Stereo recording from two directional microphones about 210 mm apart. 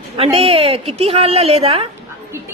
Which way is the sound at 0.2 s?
30° right (ahead or behind).